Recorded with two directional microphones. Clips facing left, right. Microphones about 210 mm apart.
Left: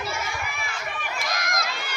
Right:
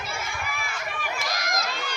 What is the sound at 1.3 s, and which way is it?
Crowd, 55° left (ahead or behind).